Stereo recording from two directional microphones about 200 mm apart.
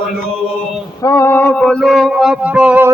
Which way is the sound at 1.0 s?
15° left (ahead or behind).